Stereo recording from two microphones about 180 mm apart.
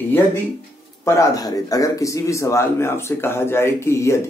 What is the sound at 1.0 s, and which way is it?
A man's voice, 20° left (ahead or behind).